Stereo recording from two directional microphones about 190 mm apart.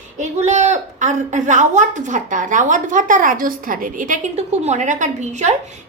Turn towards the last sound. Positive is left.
turn(degrees=-40)  # may be behind; listen again after turning